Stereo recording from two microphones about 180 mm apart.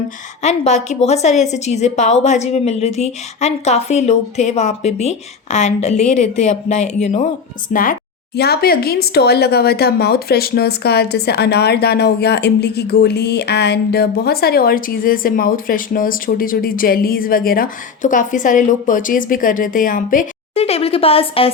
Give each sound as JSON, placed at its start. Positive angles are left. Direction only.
{"t": 0.4, "sound": "a woman's voice", "side_deg": 40}
{"t": 20.6, "sound": "a woman's voice", "side_deg": 35}